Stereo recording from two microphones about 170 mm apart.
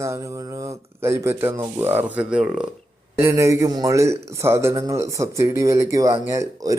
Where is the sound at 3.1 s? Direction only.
15° right (ahead or behind).